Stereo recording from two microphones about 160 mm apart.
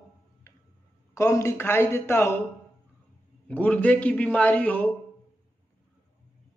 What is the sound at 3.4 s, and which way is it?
A man's voice, 10° left (ahead or behind).